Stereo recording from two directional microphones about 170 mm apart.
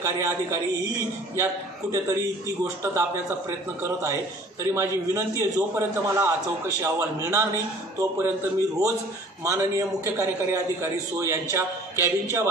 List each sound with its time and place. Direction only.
0.0 s a man's voice: 20° right (ahead or behind)